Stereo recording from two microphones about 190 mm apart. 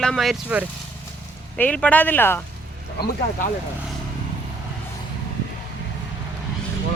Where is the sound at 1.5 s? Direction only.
5° left (ahead or behind).